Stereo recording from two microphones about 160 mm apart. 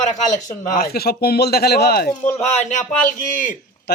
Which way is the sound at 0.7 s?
70° left (ahead or behind).